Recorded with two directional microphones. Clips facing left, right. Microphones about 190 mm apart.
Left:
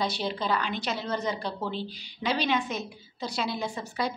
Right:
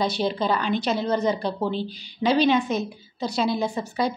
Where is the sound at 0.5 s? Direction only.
25° right (ahead or behind).